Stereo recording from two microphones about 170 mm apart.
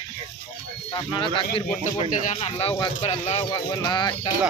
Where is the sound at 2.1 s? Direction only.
50° left (ahead or behind).